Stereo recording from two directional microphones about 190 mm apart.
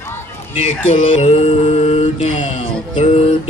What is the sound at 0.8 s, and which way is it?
Mantra, 35° left (ahead or behind).